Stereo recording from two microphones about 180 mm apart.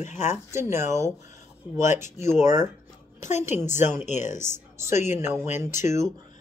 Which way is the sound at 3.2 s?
40° left (ahead or behind).